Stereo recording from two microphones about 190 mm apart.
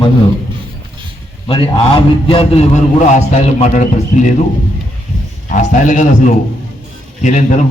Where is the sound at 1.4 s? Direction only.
30° left (ahead or behind).